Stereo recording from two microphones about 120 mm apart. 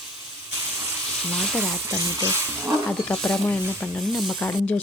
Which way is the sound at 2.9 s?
10° left (ahead or behind).